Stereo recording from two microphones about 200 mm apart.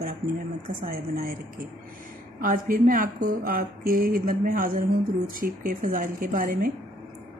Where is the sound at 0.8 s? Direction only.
45° right (ahead or behind).